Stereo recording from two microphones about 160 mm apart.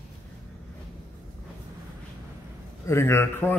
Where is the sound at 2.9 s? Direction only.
15° left (ahead or behind).